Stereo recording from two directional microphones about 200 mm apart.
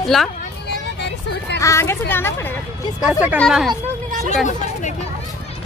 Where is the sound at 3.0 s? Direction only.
5° right (ahead or behind).